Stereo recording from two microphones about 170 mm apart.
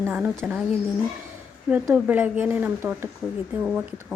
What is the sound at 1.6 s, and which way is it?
A woman's voice, 10° right (ahead or behind).